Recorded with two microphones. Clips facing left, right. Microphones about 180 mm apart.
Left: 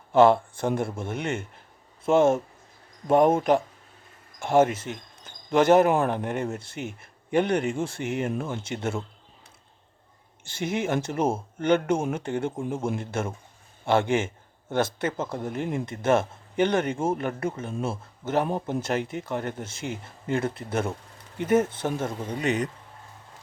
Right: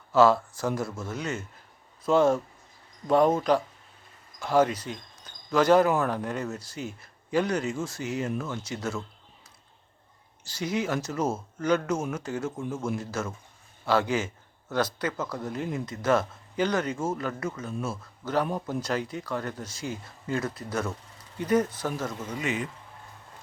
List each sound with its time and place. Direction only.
0.6 s speech: 25° left (ahead or behind)
10.5 s speech: 25° left (ahead or behind)